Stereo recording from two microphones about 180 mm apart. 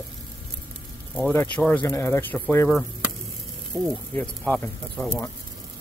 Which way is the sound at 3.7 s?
20° right (ahead or behind).